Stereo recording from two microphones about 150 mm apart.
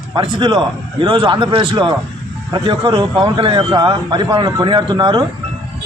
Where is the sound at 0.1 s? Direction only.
30° right (ahead or behind).